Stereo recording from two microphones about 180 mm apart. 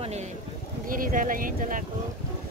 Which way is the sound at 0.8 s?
50° right (ahead or behind).